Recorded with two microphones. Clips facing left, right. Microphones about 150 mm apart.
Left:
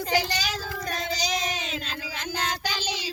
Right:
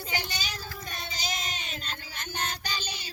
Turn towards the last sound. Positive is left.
turn(degrees=90)